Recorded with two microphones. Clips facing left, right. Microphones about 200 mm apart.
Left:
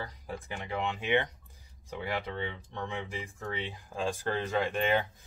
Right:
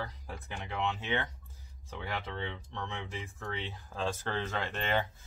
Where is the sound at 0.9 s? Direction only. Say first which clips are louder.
Left 6 dB; 15° left (ahead or behind).